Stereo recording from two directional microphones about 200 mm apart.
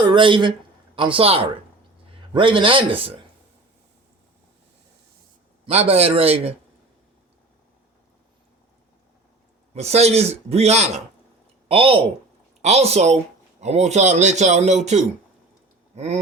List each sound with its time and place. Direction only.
0.1 s speech: 25° right (ahead or behind)
5.6 s a man's voice: 30° right (ahead or behind)
9.7 s a man's voice: 35° right (ahead or behind)